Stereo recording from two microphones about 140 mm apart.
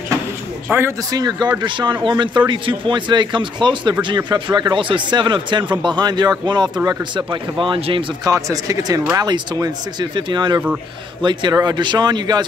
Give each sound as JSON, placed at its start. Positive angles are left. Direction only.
{"t": 0.7, "sound": "speech", "side_deg": -15}
{"t": 1.1, "sound": "speech", "side_deg": -30}
{"t": 8.3, "sound": "speech", "side_deg": -25}